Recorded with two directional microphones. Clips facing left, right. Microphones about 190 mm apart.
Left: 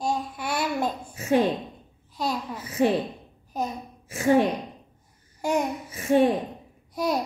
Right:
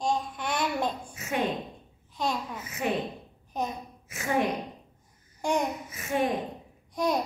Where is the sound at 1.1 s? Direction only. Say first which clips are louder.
Left 9 dB; 30° left (ahead or behind).